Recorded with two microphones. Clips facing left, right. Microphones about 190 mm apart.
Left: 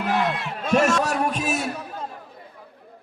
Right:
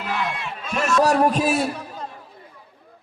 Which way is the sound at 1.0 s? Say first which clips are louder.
Right 6 dB; 35° right (ahead or behind).